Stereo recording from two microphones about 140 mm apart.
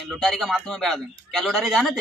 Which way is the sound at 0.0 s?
Centre (ahead or behind).